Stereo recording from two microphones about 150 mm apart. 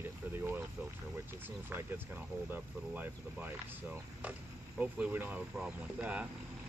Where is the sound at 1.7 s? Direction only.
15° right (ahead or behind).